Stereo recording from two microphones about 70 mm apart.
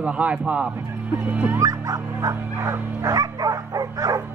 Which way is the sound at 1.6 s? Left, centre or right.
Right.